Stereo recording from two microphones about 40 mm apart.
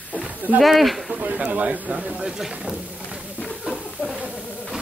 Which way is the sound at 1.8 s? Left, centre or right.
Right.